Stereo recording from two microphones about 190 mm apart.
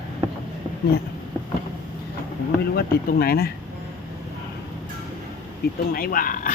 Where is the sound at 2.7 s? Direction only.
50° left (ahead or behind).